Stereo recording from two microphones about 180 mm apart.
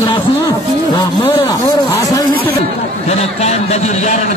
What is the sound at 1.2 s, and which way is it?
Speech, 15° left (ahead or behind).